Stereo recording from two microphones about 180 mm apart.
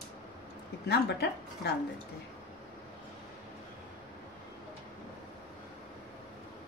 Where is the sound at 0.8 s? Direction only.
65° left (ahead or behind).